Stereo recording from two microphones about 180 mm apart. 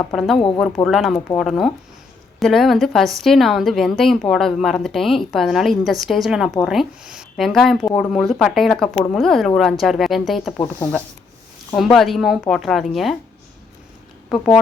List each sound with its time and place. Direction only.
0.1 s a woman's voice: centre (ahead or behind)
0.3 s speech: 30° left (ahead or behind)
0.9 s a woman's voice: centre (ahead or behind)
11.8 s a woman's voice: centre (ahead or behind)
14.3 s speech: 5° left (ahead or behind)